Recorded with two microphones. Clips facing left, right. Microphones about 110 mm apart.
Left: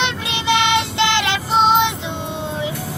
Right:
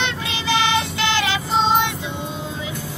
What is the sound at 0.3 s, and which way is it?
Child singing, 65° left (ahead or behind).